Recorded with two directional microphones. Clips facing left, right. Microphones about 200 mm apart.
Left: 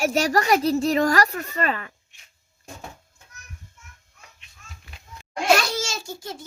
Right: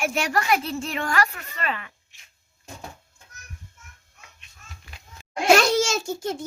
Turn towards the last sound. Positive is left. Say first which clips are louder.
# right 6 dB
turn(degrees=-50)  # may be behind; listen again after turning